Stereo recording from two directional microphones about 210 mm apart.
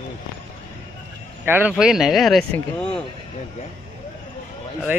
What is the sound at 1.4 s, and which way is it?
Speech, 10° right (ahead or behind).